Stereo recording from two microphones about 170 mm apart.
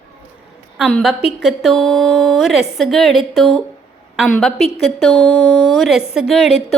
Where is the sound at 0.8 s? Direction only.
Centre (ahead or behind).